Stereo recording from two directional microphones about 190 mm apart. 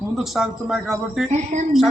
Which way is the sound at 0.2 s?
Centre (ahead or behind).